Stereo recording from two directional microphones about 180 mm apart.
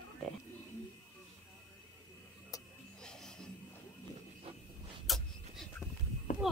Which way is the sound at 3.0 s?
5° left (ahead or behind).